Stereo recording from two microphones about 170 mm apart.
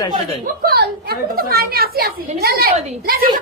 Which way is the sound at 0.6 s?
65° right (ahead or behind).